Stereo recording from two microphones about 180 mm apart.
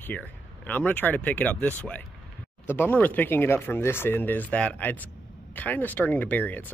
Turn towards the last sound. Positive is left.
turn(degrees=10)  # may be behind; listen again after turning